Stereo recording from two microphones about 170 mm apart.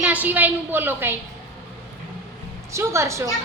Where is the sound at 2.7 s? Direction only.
15° right (ahead or behind).